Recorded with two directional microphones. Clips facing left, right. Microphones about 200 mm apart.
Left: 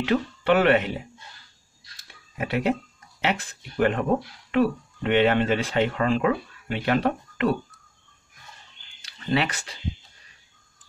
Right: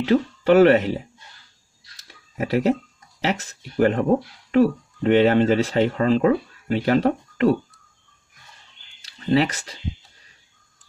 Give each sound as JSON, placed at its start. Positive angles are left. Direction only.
{"t": 0.0, "sound": "speech", "side_deg": -35}
{"t": 2.3, "sound": "speech", "side_deg": -35}
{"t": 9.0, "sound": "speech", "side_deg": -35}